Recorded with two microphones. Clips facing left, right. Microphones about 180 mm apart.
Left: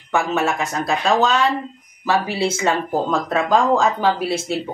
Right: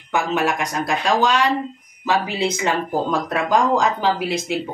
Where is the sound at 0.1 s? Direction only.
10° right (ahead or behind).